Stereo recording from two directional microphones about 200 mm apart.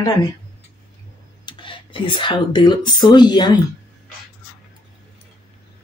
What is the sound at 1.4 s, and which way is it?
Speech, 25° left (ahead or behind).